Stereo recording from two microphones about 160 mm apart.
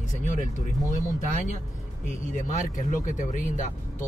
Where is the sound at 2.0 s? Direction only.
50° left (ahead or behind).